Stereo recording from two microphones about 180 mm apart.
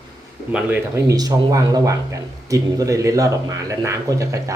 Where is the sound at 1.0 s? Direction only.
20° right (ahead or behind).